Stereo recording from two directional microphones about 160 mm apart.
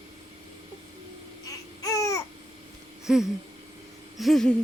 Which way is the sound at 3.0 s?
5° right (ahead or behind).